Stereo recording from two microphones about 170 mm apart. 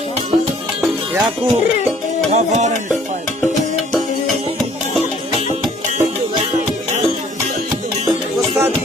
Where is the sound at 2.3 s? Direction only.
40° right (ahead or behind).